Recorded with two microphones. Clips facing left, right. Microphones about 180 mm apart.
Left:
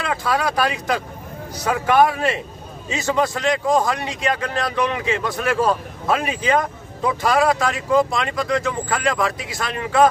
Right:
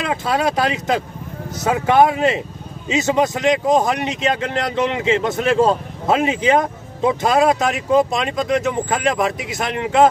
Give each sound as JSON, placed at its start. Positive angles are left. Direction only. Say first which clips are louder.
{"t": 0.0, "sound": "speech", "louder": "right 2 dB", "side_deg": -20}